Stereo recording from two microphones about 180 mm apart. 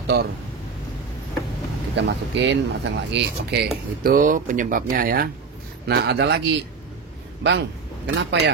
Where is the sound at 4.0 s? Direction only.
50° right (ahead or behind).